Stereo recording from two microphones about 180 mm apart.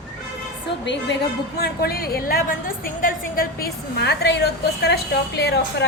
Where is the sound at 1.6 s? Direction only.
60° left (ahead or behind).